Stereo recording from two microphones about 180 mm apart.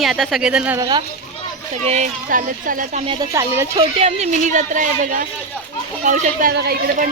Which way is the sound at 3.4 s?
15° right (ahead or behind).